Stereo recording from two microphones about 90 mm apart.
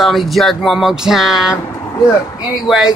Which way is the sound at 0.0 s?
Centre (ahead or behind).